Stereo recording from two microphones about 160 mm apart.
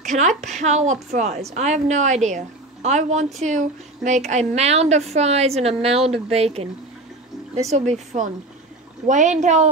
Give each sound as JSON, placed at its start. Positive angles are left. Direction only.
{"t": 0.0, "sound": "a woman's voice", "side_deg": -50}
{"t": 7.7, "sound": "speech", "side_deg": -45}